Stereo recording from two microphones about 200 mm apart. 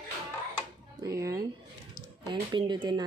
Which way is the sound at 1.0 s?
15° right (ahead or behind).